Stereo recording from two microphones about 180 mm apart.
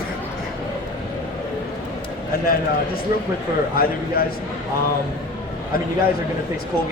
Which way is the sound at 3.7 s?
55° left (ahead or behind).